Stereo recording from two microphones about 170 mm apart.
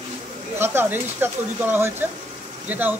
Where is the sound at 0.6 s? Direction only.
10° right (ahead or behind).